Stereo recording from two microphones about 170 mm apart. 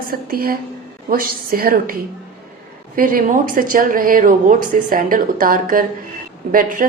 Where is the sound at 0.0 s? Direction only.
60° right (ahead or behind).